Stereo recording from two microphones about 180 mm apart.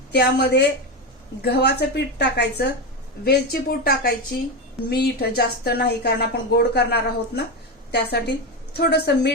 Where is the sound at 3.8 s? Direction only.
55° left (ahead or behind).